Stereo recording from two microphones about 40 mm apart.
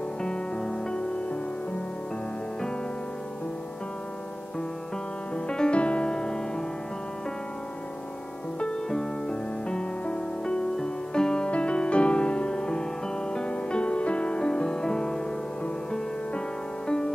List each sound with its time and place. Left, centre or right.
0.2 s music: centre
5.3 s music: left
8.5 s music: left